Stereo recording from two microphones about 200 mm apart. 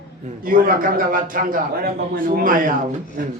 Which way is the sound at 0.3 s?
45° right (ahead or behind).